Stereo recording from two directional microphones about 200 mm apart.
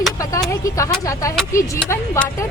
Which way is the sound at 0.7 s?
15° left (ahead or behind).